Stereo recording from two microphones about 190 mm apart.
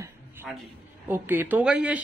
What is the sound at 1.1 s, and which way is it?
Speech, 10° right (ahead or behind).